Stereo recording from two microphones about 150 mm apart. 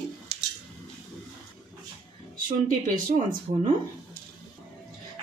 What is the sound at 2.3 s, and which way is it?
A woman's voice, 65° right (ahead or behind).